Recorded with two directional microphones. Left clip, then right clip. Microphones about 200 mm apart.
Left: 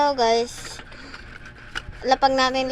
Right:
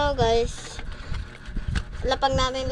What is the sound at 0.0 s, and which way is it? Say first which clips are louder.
Speech: left 3 dB; 10° left (ahead or behind).